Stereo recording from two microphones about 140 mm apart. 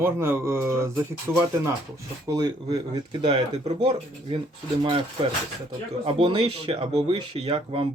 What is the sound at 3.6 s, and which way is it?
Speech, 50° right (ahead or behind).